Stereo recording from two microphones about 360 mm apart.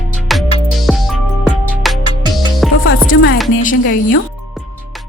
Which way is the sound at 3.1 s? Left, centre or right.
Left.